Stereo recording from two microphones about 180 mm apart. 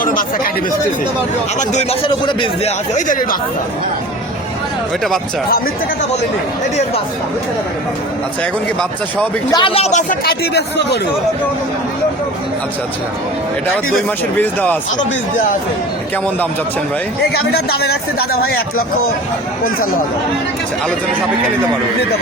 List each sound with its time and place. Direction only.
0.0 s speech: 50° left (ahead or behind)
1.5 s a woman's voice: 40° left (ahead or behind)
2.2 s speech: 25° left (ahead or behind)
2.9 s speech: 45° left (ahead or behind)
9.5 s a woman's voice: 25° left (ahead or behind)
10.2 s speech: 65° left (ahead or behind)
14.3 s speech: 10° left (ahead or behind)
17.5 s speech: 60° left (ahead or behind)